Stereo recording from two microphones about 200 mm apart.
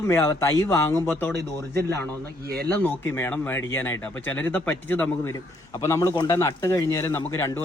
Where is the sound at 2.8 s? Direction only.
10° left (ahead or behind).